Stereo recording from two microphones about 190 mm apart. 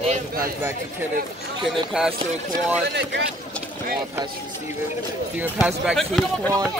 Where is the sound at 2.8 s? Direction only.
65° right (ahead or behind).